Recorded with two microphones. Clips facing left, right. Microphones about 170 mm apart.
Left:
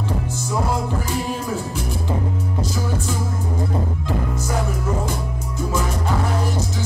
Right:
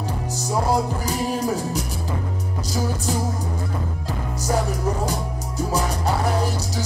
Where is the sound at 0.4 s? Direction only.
40° right (ahead or behind).